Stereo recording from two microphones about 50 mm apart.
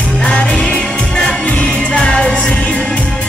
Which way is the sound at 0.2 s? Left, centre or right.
Left.